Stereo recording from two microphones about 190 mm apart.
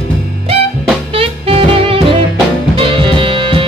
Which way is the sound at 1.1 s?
30° right (ahead or behind).